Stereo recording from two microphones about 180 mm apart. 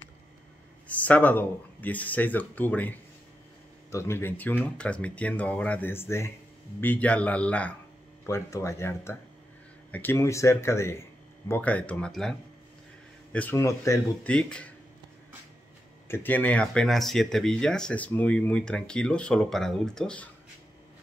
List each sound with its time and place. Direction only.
0.8 s speech: 10° left (ahead or behind)
14.3 s speech: 5° left (ahead or behind)
16.1 s speech: 10° left (ahead or behind)